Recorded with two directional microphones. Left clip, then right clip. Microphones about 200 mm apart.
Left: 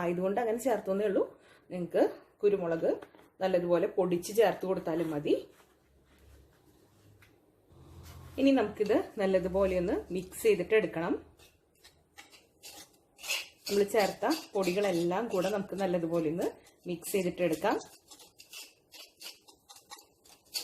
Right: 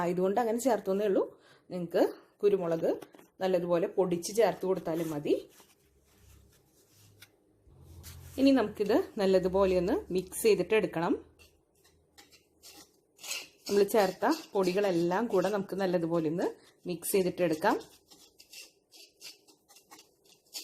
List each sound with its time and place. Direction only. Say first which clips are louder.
0.0 s speech: right 2 dB; 35° right (ahead or behind)
8.4 s speech: right 1 dB; 35° right (ahead or behind)
13.9 s speech: right 2 dB; 40° right (ahead or behind)